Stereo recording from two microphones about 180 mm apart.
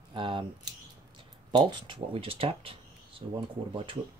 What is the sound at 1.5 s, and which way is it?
Speech, 25° right (ahead or behind).